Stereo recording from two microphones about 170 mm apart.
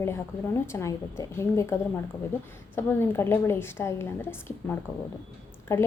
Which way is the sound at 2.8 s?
15° left (ahead or behind).